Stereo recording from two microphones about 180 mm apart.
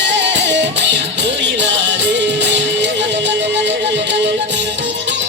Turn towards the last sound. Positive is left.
turn(degrees=-75)  # may be behind; listen again after turning